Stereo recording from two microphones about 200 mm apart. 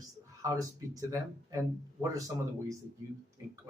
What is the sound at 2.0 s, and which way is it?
Speech, 15° right (ahead or behind).